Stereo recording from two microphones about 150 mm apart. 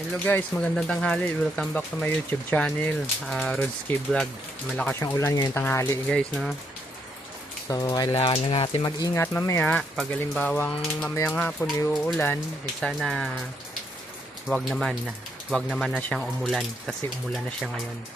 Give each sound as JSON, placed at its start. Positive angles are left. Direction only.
{"t": 0.3, "sound": "speech", "side_deg": 10}
{"t": 6.1, "sound": "speech", "side_deg": 5}
{"t": 7.7, "sound": "speech", "side_deg": 25}
{"t": 8.1, "sound": "speech", "side_deg": 40}
{"t": 9.1, "sound": "speech", "side_deg": 20}
{"t": 12.8, "sound": "speech", "side_deg": 0}
{"t": 14.4, "sound": "speech", "side_deg": 0}